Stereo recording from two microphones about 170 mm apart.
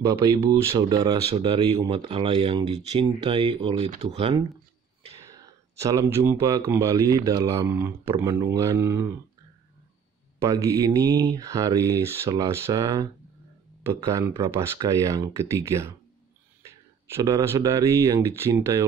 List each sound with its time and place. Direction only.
0.0 s speech: 20° right (ahead or behind)
5.3 s speech: 20° right (ahead or behind)
10.4 s speech: 20° right (ahead or behind)